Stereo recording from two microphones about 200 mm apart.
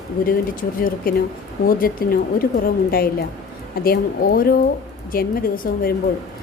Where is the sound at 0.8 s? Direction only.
45° left (ahead or behind).